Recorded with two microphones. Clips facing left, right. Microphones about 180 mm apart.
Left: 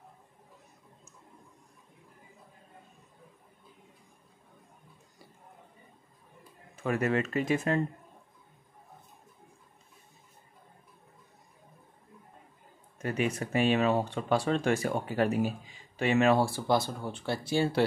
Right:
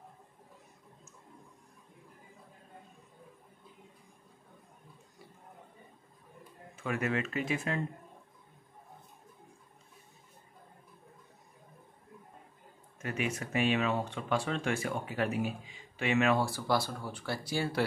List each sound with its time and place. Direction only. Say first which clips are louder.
6.8 s speech: left 4 dB; 40° left (ahead or behind)
13.0 s speech: left 5 dB; 35° left (ahead or behind)